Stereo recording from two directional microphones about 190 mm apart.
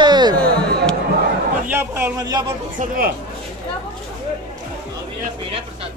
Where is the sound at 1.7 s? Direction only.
10° right (ahead or behind).